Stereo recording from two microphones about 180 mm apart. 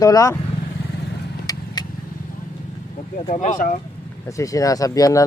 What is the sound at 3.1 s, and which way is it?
Speech, 40° left (ahead or behind).